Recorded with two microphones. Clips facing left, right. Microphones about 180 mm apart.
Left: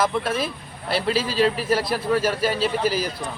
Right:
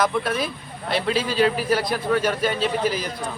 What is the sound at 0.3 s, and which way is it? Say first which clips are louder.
A man's voice: even; centre (ahead or behind).